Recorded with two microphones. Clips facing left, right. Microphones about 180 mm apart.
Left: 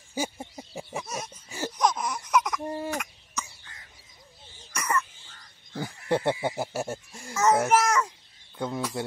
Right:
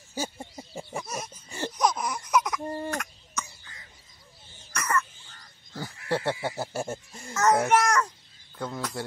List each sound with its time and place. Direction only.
0.1 s a sound: 15° left (ahead or behind)
2.6 s cough: 10° left (ahead or behind)
4.7 s cough: 15° left (ahead or behind)
5.7 s speech: 20° left (ahead or behind)
8.5 s speech: 15° left (ahead or behind)